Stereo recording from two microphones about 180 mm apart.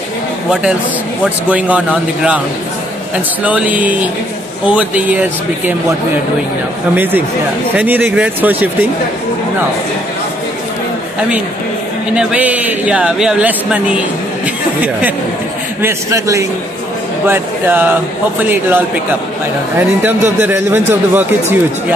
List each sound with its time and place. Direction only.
1.2 s speech: 5° right (ahead or behind)
3.4 s speech: 10° right (ahead or behind)
7.0 s speech: 10° right (ahead or behind)
12.2 s speech: 5° right (ahead or behind)
20.3 s speech: 10° right (ahead or behind)